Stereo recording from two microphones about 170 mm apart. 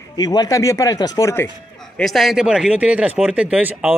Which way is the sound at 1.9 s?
Centre (ahead or behind).